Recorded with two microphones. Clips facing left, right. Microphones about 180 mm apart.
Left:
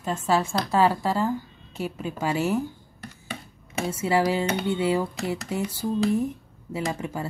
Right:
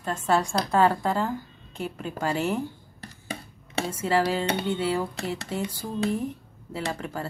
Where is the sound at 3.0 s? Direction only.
35° right (ahead or behind).